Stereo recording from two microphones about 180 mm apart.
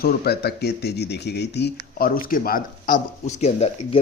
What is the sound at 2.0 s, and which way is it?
A man's voice, 55° left (ahead or behind).